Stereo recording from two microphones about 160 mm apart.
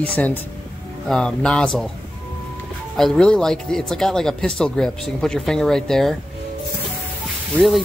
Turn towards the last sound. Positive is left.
turn(degrees=0)  # may be behind; listen again after turning